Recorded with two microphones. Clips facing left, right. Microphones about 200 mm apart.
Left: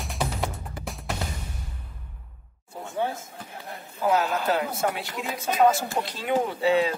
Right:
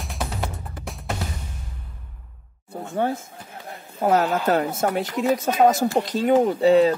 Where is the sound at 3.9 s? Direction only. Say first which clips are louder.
Right 4 dB; 50° right (ahead or behind).